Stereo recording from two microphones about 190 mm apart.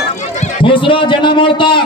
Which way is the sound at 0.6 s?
25° left (ahead or behind).